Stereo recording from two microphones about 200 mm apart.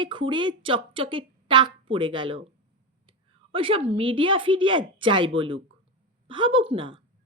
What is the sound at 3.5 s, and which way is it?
Speech, 25° right (ahead or behind).